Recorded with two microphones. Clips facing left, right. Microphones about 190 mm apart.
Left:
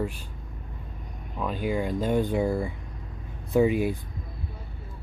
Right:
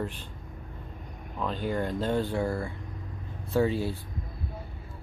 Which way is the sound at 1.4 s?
10° left (ahead or behind).